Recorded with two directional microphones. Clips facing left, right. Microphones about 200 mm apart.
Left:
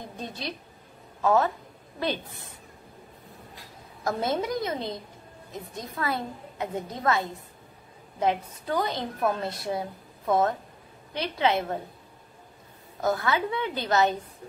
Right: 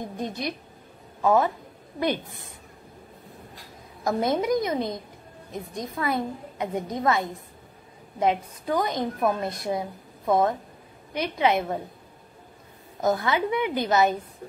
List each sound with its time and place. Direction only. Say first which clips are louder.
1.2 s a woman's voice: right 2 dB; 10° right (ahead or behind)
4.0 s a woman's voice: right 3 dB; 15° right (ahead or behind)
13.0 s a woman's voice: right 2 dB; 20° right (ahead or behind)